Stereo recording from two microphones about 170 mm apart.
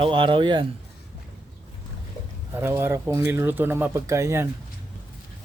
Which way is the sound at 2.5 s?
15° right (ahead or behind).